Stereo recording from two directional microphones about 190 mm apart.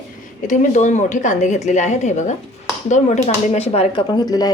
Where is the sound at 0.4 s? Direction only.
40° left (ahead or behind).